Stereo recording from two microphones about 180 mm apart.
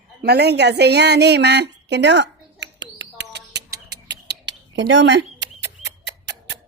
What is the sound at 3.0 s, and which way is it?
Bird, 70° right (ahead or behind).